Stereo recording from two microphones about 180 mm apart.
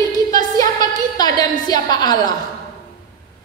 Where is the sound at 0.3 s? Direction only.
20° left (ahead or behind).